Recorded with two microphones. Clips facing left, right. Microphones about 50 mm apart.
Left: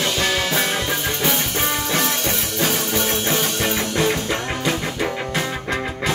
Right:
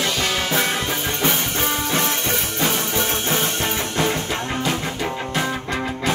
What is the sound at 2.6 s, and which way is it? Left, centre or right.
Music, right.